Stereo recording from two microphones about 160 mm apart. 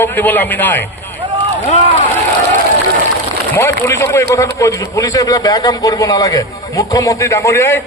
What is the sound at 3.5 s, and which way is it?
A man's voice, 15° left (ahead or behind).